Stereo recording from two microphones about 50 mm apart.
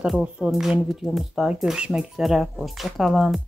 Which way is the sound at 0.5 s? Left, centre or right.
Centre.